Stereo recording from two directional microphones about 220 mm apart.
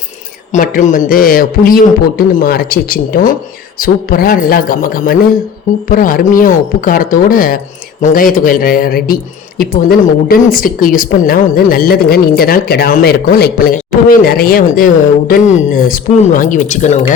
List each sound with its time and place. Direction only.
0.5 s speech: 35° left (ahead or behind)